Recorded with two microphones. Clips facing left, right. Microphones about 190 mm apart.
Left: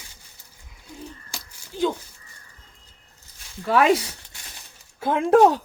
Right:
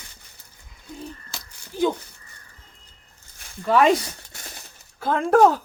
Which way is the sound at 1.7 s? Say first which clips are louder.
Right 2 dB; 15° right (ahead or behind).